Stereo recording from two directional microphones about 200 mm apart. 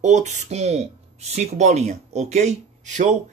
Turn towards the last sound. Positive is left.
turn(degrees=-35)  # may be behind; listen again after turning